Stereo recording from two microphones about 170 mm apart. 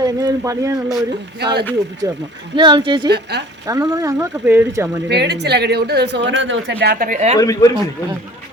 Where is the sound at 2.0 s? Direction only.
20° right (ahead or behind).